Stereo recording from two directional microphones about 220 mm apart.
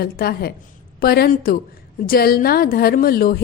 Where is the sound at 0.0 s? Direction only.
45° left (ahead or behind).